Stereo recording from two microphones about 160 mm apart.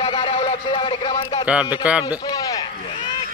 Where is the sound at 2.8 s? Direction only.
40° left (ahead or behind).